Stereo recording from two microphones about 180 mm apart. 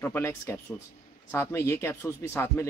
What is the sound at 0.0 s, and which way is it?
Speech, 15° left (ahead or behind).